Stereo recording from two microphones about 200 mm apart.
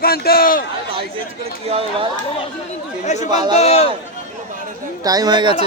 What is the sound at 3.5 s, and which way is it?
Speech, 30° left (ahead or behind).